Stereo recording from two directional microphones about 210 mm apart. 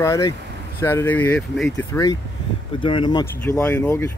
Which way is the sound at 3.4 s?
5° left (ahead or behind).